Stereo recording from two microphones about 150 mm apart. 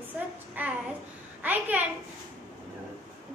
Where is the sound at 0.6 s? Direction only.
10° right (ahead or behind).